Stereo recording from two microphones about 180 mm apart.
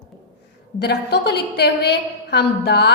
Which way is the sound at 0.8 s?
65° left (ahead or behind).